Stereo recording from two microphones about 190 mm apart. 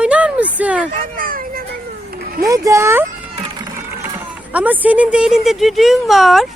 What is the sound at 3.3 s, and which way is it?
Music, 25° right (ahead or behind).